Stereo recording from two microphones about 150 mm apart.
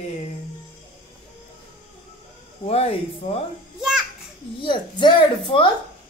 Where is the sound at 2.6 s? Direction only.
40° left (ahead or behind).